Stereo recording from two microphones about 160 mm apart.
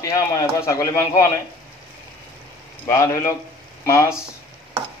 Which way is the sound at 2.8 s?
20° left (ahead or behind).